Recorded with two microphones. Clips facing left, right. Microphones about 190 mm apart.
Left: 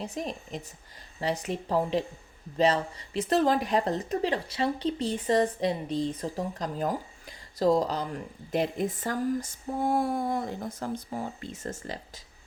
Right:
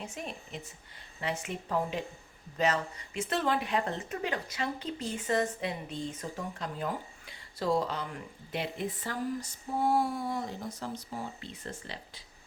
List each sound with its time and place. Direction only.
0.0 s speech: 35° left (ahead or behind)